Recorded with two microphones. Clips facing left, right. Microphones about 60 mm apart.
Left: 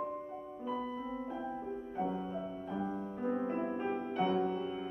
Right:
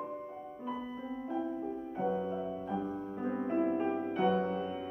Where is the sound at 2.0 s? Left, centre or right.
Centre.